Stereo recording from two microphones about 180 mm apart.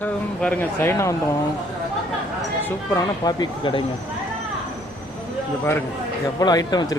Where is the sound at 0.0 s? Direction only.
10° left (ahead or behind).